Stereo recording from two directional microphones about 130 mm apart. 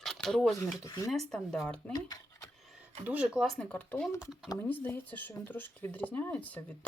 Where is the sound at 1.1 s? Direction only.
5° left (ahead or behind).